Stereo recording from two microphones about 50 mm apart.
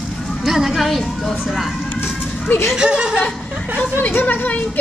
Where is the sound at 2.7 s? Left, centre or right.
Centre.